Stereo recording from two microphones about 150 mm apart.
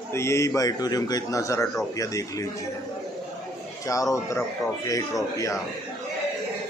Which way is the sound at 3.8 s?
20° left (ahead or behind).